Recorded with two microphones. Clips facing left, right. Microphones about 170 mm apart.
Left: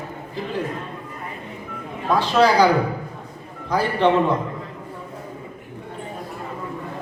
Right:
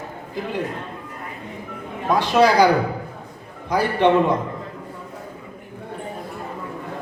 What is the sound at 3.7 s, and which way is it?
Speech, 15° right (ahead or behind).